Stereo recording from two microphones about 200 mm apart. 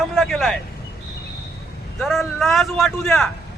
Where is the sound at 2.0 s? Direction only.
Centre (ahead or behind).